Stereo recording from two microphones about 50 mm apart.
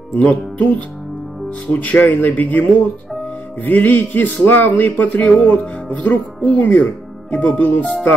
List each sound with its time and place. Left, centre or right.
0.2 s speech: left
5.9 s music: left
6.5 s speech: left